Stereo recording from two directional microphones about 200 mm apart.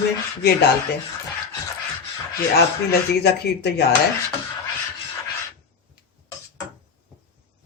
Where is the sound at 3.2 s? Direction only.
55° left (ahead or behind).